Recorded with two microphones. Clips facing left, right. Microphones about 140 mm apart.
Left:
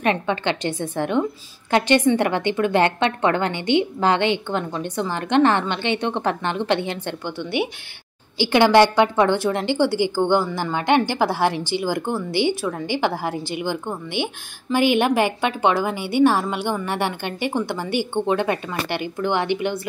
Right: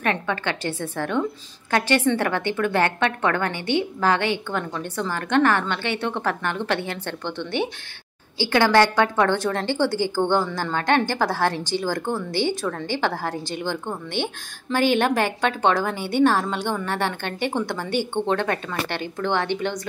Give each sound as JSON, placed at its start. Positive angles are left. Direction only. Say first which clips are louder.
{"t": 0.0, "sound": "a woman's voice", "louder": "left 3 dB", "side_deg": 20}